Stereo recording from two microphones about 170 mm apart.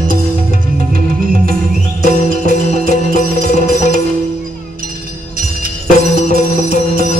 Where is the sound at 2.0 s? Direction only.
55° right (ahead or behind).